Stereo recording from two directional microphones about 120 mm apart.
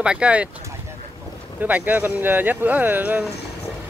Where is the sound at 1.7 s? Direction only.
15° right (ahead or behind).